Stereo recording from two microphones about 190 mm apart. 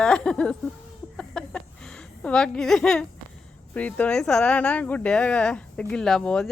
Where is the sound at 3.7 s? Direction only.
5° left (ahead or behind).